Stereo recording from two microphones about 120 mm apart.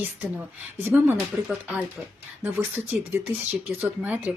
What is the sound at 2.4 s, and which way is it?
Speech, 15° right (ahead or behind).